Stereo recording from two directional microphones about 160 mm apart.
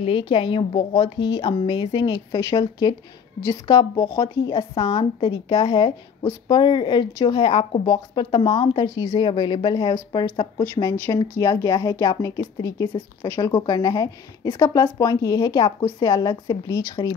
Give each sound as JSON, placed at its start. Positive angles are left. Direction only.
{"t": 0.0, "sound": "a woman's voice", "side_deg": 35}
{"t": 4.7, "sound": "a woman's voice", "side_deg": 35}